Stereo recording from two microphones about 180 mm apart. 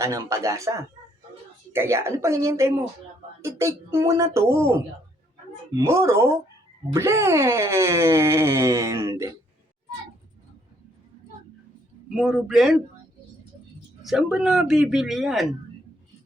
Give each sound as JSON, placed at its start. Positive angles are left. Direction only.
{"t": 0.0, "sound": "speech", "side_deg": -15}
{"t": 12.1, "sound": "speech", "side_deg": 0}
{"t": 14.0, "sound": "speech", "side_deg": 0}